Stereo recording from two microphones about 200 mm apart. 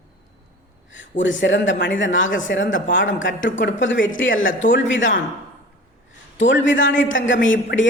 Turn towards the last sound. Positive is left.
turn(degrees=65)  # may be behind; listen again after turning